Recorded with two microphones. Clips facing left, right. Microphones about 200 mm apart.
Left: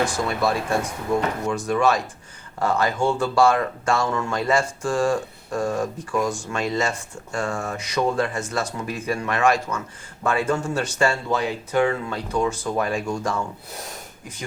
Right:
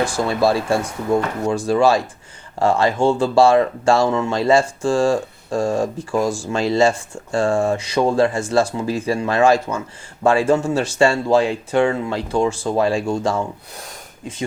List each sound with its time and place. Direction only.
0.0 s speech: 30° right (ahead or behind)